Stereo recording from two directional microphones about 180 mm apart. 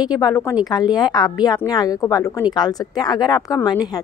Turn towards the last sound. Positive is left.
turn(degrees=20)  # may be behind; listen again after turning